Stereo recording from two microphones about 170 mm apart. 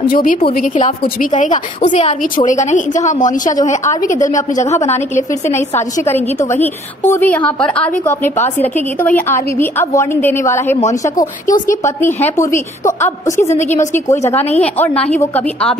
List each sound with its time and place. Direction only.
0.0 s a woman's voice: 55° left (ahead or behind)
6.0 s a woman's voice: 10° left (ahead or behind)
13.4 s a woman's voice: 45° left (ahead or behind)
13.7 s a woman's voice: 15° left (ahead or behind)